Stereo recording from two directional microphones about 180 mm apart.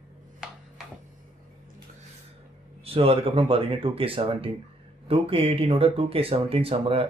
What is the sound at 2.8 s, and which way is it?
Speech, 35° right (ahead or behind).